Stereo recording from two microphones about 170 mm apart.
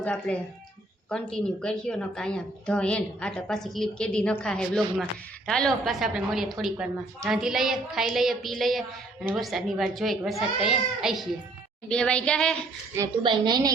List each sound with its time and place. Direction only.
0.0 s a woman's voice: 5° left (ahead or behind)
13.2 s a woman's voice: 25° right (ahead or behind)